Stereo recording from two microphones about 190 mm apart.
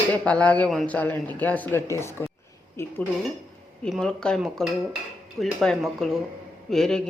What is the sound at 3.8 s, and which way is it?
Speech, centre (ahead or behind).